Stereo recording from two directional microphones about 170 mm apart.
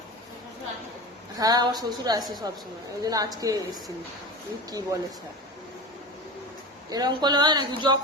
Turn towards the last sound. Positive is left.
turn(degrees=-25)  # may be behind; listen again after turning